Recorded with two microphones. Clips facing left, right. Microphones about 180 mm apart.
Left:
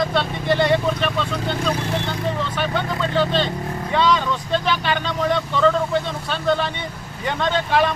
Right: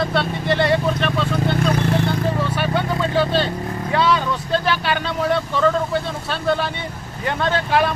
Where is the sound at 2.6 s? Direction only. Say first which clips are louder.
Right 2 dB; 10° right (ahead or behind).